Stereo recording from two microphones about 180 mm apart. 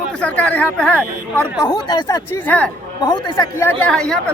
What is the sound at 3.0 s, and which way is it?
Speech, 25° left (ahead or behind).